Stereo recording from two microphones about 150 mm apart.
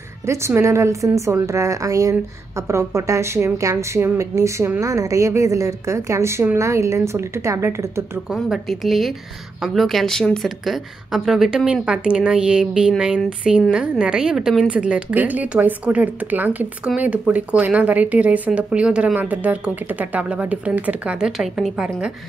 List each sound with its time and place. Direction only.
0.3 s speech: 20° right (ahead or behind)
8.3 s a woman's voice: centre (ahead or behind)